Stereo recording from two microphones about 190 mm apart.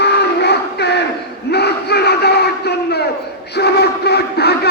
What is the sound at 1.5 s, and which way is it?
Crowd, 60° left (ahead or behind).